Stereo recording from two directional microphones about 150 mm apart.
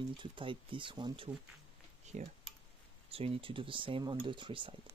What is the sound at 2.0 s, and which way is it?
Speech, 50° right (ahead or behind).